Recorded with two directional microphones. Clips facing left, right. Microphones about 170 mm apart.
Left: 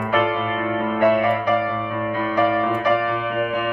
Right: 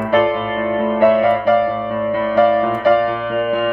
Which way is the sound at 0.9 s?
30° right (ahead or behind).